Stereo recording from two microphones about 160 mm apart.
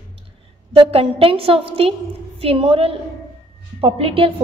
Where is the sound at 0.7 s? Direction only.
35° right (ahead or behind).